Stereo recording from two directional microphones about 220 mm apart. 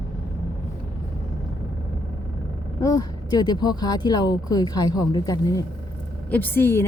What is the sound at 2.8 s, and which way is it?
Speech, 15° left (ahead or behind).